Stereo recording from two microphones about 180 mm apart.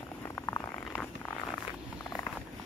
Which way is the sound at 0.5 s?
15° left (ahead or behind).